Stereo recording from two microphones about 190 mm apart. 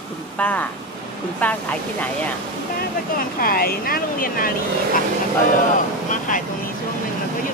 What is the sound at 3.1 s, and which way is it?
Speech, 50° left (ahead or behind).